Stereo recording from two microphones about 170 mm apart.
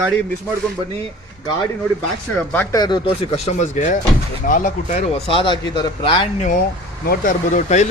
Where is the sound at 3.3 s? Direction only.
40° left (ahead or behind).